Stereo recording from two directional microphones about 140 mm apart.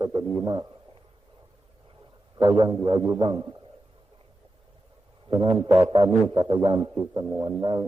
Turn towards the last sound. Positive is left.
turn(degrees=-35)  # may be behind; listen again after turning